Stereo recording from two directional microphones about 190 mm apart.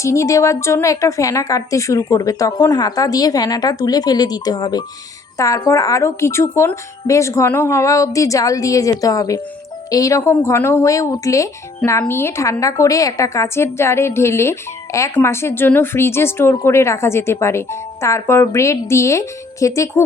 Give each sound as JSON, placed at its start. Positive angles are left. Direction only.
{"t": 0.0, "sound": "a woman's voice", "side_deg": 15}